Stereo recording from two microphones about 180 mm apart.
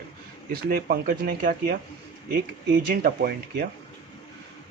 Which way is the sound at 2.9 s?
55° right (ahead or behind).